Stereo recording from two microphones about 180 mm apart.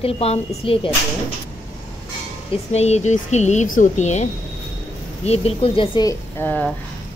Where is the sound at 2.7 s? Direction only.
35° left (ahead or behind).